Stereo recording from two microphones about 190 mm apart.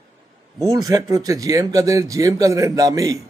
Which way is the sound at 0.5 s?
15° right (ahead or behind).